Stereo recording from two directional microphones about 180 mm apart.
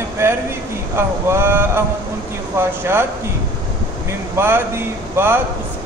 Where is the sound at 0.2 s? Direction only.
15° right (ahead or behind).